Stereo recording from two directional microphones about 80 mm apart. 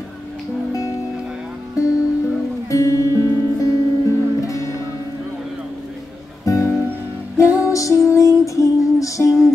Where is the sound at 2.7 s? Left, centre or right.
Left.